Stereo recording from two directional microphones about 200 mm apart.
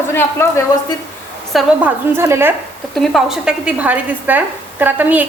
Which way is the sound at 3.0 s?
Centre (ahead or behind).